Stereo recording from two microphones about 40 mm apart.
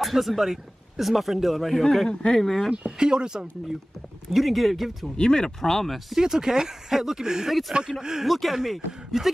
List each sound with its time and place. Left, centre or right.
0.0 s speech: centre
2.0 s speech: left
2.4 s speech: centre
3.0 s speech: centre
4.3 s speech: centre
5.1 s speech: centre
5.6 s speech: centre
6.2 s speech: centre
8.3 s speech: centre